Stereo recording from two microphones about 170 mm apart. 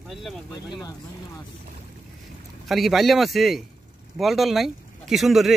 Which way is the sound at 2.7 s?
Centre (ahead or behind).